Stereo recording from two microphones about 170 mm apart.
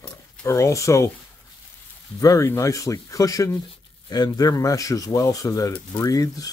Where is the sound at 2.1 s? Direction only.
20° left (ahead or behind).